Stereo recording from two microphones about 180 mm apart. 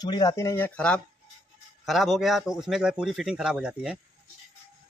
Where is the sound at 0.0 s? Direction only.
25° left (ahead or behind); by 4.0 s 5° right (ahead or behind).